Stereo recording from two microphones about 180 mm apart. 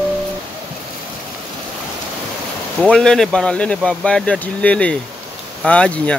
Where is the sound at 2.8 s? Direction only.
5° left (ahead or behind).